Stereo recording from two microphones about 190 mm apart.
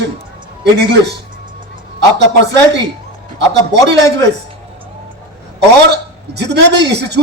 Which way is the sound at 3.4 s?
65° right (ahead or behind).